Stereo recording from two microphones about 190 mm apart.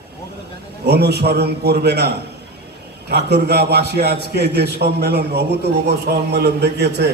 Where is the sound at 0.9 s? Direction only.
60° right (ahead or behind).